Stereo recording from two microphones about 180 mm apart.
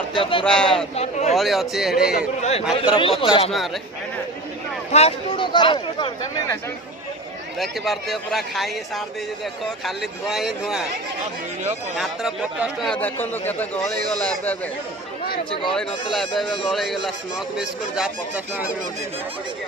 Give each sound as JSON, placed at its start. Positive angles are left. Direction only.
{"t": 0.1, "sound": "speech", "side_deg": 30}
{"t": 0.4, "sound": "speech", "side_deg": 5}
{"t": 0.9, "sound": "speech", "side_deg": 40}
{"t": 1.3, "sound": "speech", "side_deg": 0}
{"t": 2.4, "sound": "speech", "side_deg": 35}
{"t": 4.9, "sound": "speech", "side_deg": 35}
{"t": 7.6, "sound": "speech", "side_deg": 0}
{"t": 9.8, "sound": "speech", "side_deg": 0}
{"t": 11.9, "sound": "speech", "side_deg": -5}
{"t": 12.9, "sound": "speech", "side_deg": 10}
{"t": 15.7, "sound": "speech", "side_deg": 5}